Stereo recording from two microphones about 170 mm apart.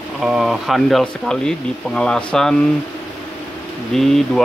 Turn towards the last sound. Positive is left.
turn(degrees=0)  # may be behind; listen again after turning